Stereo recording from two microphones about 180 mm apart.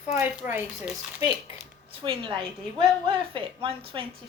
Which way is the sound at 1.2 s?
25° right (ahead or behind).